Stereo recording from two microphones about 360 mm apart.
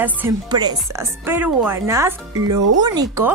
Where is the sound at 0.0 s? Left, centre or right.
Centre.